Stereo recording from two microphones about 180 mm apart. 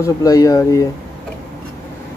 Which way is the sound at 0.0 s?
20° left (ahead or behind).